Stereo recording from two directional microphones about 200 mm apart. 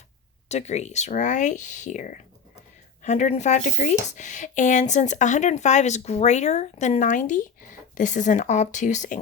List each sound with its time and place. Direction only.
0.4 s speech: 35° left (ahead or behind)